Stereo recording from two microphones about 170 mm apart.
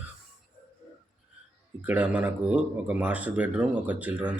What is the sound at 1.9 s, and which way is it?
Speech, 10° right (ahead or behind).